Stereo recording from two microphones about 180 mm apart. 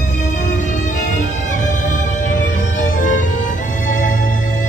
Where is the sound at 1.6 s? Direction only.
45° left (ahead or behind).